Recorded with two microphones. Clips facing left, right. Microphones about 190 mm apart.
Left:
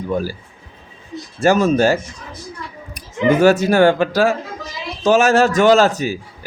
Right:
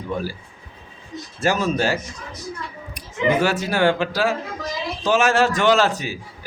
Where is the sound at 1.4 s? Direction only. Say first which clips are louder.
Left 7 dB; 45° left (ahead or behind).